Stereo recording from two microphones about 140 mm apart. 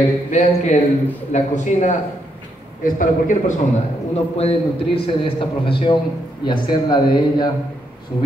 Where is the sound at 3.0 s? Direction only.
70° left (ahead or behind).